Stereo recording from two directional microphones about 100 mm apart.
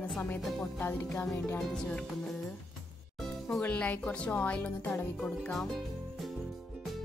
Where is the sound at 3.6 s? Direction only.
15° left (ahead or behind).